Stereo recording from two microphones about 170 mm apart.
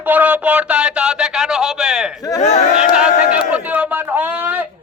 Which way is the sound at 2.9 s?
5° right (ahead or behind).